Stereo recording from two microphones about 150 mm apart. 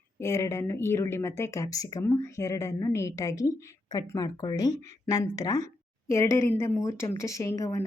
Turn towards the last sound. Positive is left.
turn(degrees=20)  # may be behind; listen again after turning